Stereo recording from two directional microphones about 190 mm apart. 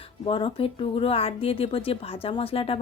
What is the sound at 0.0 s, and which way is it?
A woman's voice, 25° left (ahead or behind).